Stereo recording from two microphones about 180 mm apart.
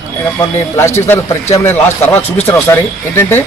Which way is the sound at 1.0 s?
15° left (ahead or behind).